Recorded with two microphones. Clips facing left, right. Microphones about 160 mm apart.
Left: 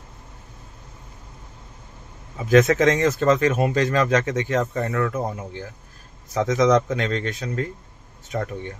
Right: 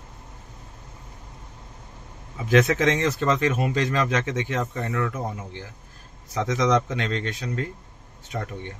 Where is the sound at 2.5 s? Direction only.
40° left (ahead or behind).